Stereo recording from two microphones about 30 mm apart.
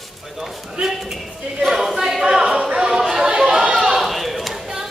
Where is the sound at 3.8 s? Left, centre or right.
Centre.